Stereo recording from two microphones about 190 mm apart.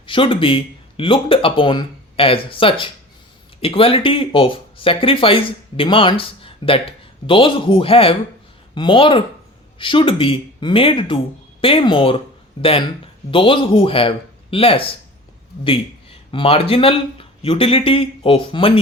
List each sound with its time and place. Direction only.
0.0 s speech: 25° left (ahead or behind)
13.3 s speech: 25° left (ahead or behind)